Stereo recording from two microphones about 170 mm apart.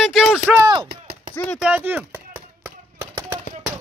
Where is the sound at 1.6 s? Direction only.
10° right (ahead or behind).